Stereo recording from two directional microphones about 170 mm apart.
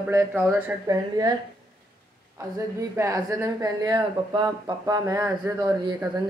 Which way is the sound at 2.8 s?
15° right (ahead or behind).